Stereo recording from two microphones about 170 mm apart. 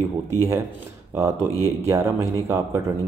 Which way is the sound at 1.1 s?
15° right (ahead or behind).